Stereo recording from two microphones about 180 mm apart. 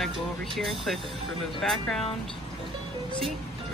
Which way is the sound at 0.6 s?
Centre (ahead or behind).